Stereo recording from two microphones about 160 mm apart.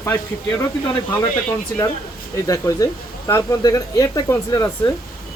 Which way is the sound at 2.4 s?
20° left (ahead or behind).